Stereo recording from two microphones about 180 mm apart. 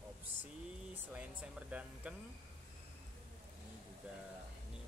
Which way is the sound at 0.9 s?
10° right (ahead or behind).